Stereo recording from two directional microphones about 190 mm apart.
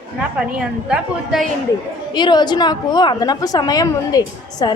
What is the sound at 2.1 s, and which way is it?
A woman's voice, 25° left (ahead or behind).